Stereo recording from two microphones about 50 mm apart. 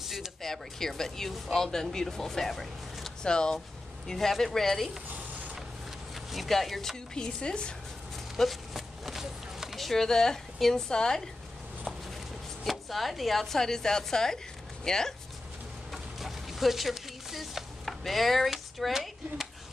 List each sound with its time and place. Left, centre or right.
0.0 s a sound: centre
0.4 s speech: centre
3.2 s speech: centre
6.1 s speech: centre
7.2 s speech: centre
8.4 s a sound: centre
9.8 s speech: centre
12.6 s speech: centre
15.9 s a sound: centre